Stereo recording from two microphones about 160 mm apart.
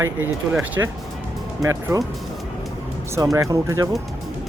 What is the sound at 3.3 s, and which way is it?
Speech, 20° right (ahead or behind).